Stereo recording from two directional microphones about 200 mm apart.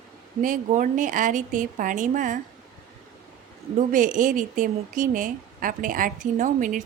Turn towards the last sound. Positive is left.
turn(degrees=-40)  # may be behind; listen again after turning